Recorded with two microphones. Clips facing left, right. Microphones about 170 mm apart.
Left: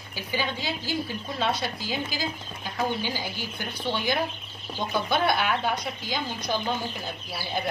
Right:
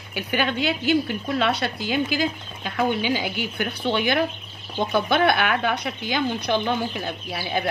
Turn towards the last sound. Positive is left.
turn(degrees=-65)  # may be behind; listen again after turning